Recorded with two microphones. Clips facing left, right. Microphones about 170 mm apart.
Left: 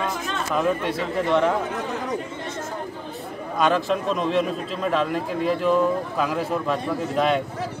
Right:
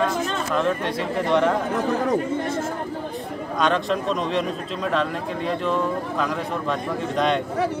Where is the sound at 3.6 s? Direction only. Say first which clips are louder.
Left 1 dB; 5° left (ahead or behind).